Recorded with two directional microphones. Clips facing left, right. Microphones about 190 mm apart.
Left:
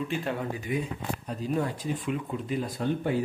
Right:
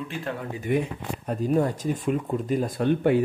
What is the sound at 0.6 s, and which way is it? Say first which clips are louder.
Speech: right 5 dB; 60° right (ahead or behind).